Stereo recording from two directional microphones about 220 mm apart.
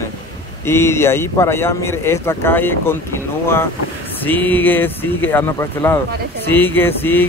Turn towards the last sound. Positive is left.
turn(degrees=10)  # may be behind; listen again after turning